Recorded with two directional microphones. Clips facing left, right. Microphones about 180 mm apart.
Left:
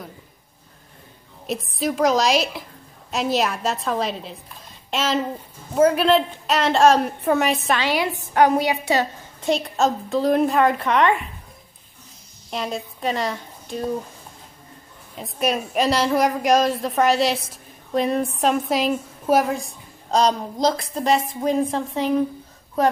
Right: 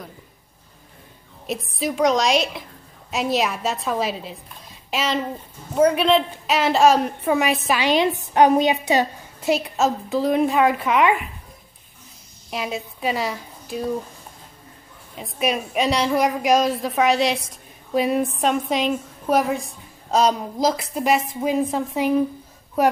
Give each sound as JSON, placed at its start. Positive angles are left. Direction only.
{"t": 1.5, "sound": "a woman's voice", "side_deg": 0}
{"t": 7.8, "sound": "a woman's voice", "side_deg": -20}
{"t": 9.4, "sound": "a woman's voice", "side_deg": -5}
{"t": 12.4, "sound": "a woman's voice", "side_deg": -5}
{"t": 15.1, "sound": "a woman's voice", "side_deg": 0}